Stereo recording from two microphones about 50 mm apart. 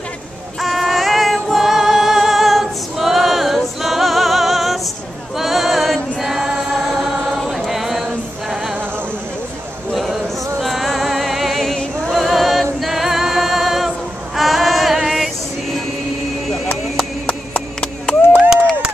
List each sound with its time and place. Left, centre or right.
0.6 s singing: centre
5.4 s choir: centre
9.9 s music: centre
12.8 s singing: centre
17.3 s music: left